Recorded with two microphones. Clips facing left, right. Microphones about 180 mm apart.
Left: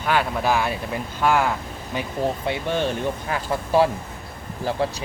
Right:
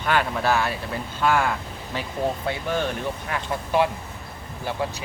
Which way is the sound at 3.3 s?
35° left (ahead or behind).